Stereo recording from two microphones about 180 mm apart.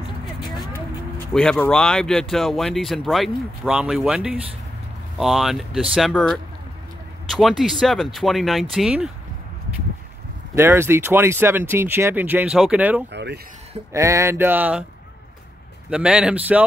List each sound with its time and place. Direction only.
1.3 s speech: 5° left (ahead or behind)
10.5 s speech: 15° right (ahead or behind)
13.1 s speech: 70° right (ahead or behind)
13.9 s speech: 15° right (ahead or behind)
15.9 s speech: 5° right (ahead or behind)